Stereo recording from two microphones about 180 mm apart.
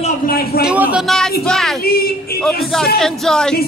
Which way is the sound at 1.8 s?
60° left (ahead or behind).